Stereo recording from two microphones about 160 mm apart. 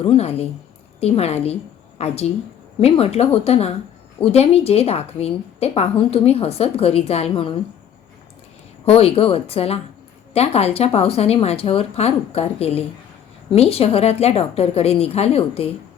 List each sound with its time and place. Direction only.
0.0 s a woman's voice: 40° left (ahead or behind)
8.9 s a woman's voice: 35° left (ahead or behind)